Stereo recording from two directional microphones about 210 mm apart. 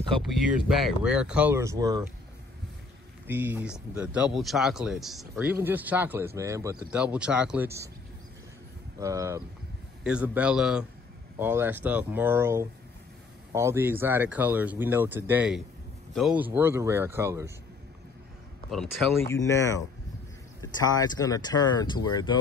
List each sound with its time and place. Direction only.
0.2 s speech: centre (ahead or behind); by 2.0 s 15° right (ahead or behind)
3.3 s speech: 10° right (ahead or behind)
9.0 s speech: 15° right (ahead or behind)
19.3 s speech: 15° left (ahead or behind)
20.9 s speech: 20° left (ahead or behind)